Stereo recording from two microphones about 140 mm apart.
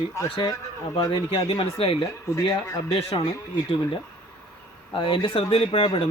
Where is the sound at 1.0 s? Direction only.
25° left (ahead or behind).